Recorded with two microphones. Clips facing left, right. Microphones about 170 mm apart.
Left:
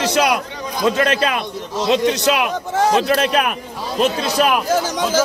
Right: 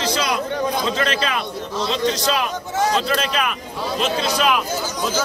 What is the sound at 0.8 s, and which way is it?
Speech, 50° left (ahead or behind).